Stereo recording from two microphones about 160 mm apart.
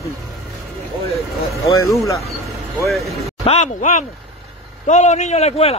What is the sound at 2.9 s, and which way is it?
Speech, centre (ahead or behind).